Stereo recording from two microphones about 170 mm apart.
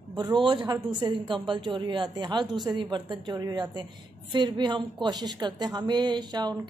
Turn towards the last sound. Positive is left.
turn(degrees=-25)  # may be behind; listen again after turning